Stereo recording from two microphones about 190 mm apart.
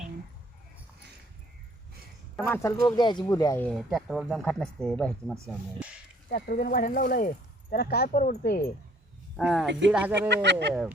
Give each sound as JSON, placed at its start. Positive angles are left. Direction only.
{"t": 2.5, "sound": "speech", "side_deg": 15}
{"t": 3.7, "sound": "speech", "side_deg": 0}
{"t": 6.3, "sound": "speech", "side_deg": 50}
{"t": 9.3, "sound": "speech", "side_deg": 0}
{"t": 10.2, "sound": "speech", "side_deg": -65}